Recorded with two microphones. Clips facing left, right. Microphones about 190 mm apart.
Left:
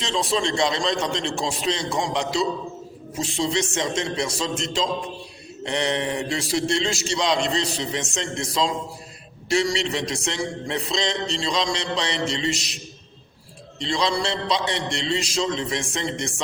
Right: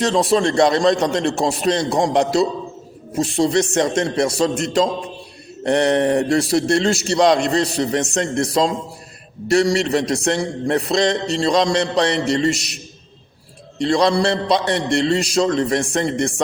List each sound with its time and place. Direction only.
0.0 s a man's voice: 55° right (ahead or behind)
2.0 s a man's voice: 50° right (ahead or behind)
13.8 s a man's voice: 60° right (ahead or behind)